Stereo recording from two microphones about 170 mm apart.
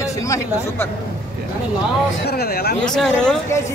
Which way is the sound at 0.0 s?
15° left (ahead or behind).